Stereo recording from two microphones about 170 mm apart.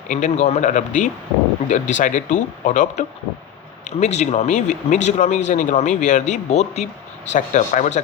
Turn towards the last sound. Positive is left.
turn(degrees=45)  # may be behind; listen again after turning